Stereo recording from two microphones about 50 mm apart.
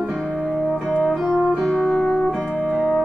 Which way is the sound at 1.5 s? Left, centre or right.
Centre.